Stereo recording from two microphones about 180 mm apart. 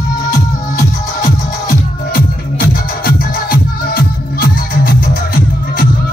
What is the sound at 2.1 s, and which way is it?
Music, 55° left (ahead or behind).